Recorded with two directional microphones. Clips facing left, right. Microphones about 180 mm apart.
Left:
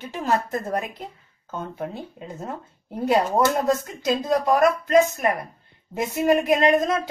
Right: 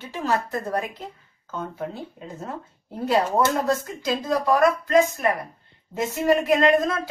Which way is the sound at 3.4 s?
15° left (ahead or behind).